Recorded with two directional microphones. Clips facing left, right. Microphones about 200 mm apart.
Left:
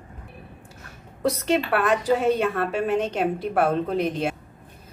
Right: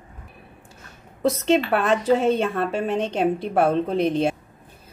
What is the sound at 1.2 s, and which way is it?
A woman's voice, 25° right (ahead or behind).